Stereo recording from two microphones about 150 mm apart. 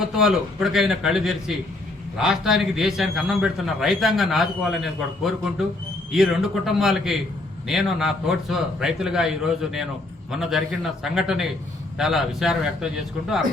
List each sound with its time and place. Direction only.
0.0 s a man's voice: 5° right (ahead or behind)